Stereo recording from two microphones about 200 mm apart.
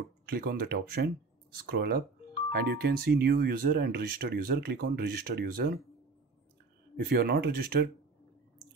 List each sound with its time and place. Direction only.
0.3 s speech: 50° right (ahead or behind)
7.0 s speech: 50° right (ahead or behind)